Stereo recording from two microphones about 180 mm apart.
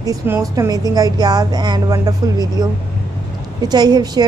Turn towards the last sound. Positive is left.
turn(degrees=-20)  # may be behind; listen again after turning